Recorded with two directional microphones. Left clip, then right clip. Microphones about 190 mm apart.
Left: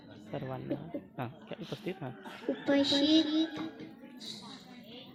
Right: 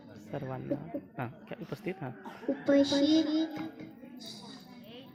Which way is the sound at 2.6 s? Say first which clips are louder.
Right 2 dB; 55° right (ahead or behind).